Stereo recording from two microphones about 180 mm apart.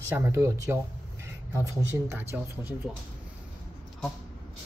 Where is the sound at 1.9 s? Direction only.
15° right (ahead or behind).